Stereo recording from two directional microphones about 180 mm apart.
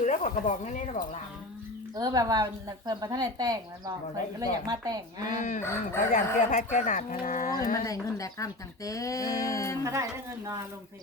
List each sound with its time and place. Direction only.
0.0 s speech: 45° left (ahead or behind)
2.0 s a woman's voice: 20° right (ahead or behind)
5.4 s speech: 45° left (ahead or behind)
7.9 s speech: 20° left (ahead or behind)
9.8 s speech: 15° right (ahead or behind)